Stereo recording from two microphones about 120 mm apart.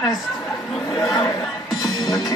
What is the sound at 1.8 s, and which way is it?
Music, 30° left (ahead or behind).